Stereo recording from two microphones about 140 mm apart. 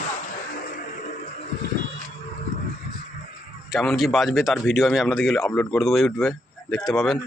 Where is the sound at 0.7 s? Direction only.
70° left (ahead or behind).